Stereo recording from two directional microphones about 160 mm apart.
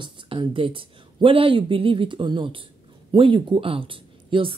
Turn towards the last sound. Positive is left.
turn(degrees=-35)  # may be behind; listen again after turning